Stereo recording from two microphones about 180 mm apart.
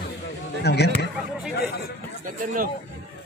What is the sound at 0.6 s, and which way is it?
Speech, 65° left (ahead or behind).